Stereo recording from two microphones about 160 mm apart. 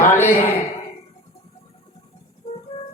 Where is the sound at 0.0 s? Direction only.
15° left (ahead or behind).